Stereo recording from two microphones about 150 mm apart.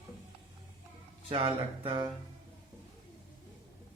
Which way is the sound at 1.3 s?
30° right (ahead or behind).